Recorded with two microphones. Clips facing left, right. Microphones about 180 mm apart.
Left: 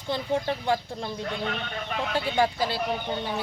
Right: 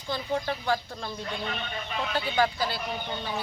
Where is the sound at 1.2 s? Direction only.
55° left (ahead or behind).